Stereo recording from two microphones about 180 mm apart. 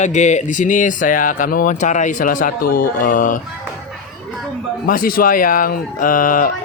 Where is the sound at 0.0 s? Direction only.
40° left (ahead or behind).